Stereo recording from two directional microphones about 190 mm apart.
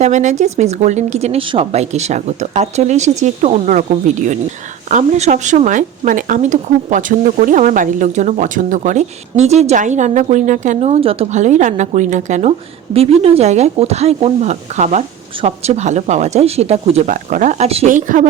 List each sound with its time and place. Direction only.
0.0 s speech: 40° right (ahead or behind)
4.9 s speech: 40° right (ahead or behind)